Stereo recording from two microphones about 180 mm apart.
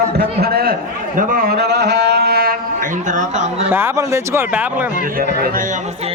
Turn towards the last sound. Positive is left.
turn(degrees=-15)  # may be behind; listen again after turning